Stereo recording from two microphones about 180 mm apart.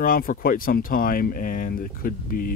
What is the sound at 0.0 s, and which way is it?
Speech, 50° left (ahead or behind).